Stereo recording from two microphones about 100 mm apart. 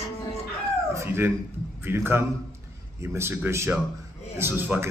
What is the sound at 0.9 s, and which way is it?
Speech, 25° right (ahead or behind).